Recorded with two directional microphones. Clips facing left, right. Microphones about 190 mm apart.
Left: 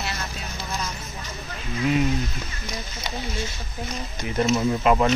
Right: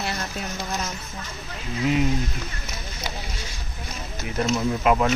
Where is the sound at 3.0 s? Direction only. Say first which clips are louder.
Left 1 dB; 10° right (ahead or behind).